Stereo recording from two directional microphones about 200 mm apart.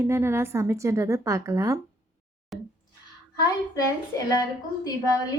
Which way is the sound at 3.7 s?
15° left (ahead or behind).